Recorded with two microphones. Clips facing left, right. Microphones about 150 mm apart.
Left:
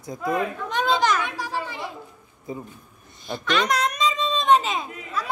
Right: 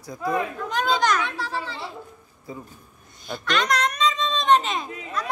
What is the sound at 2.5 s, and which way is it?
Speech, 20° left (ahead or behind).